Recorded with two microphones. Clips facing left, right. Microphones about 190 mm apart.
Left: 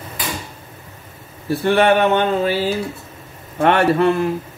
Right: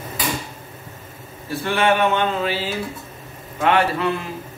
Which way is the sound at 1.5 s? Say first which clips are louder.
Left 5 dB; 40° left (ahead or behind).